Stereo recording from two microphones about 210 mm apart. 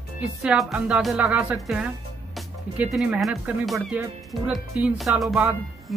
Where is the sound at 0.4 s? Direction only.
5° right (ahead or behind).